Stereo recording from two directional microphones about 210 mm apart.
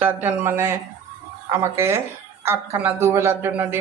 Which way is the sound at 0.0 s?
10° right (ahead or behind).